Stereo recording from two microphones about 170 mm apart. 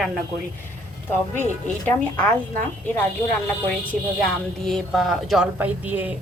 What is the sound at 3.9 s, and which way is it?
A woman's voice, centre (ahead or behind).